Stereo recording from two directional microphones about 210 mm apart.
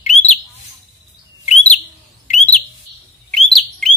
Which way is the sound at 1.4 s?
35° left (ahead or behind).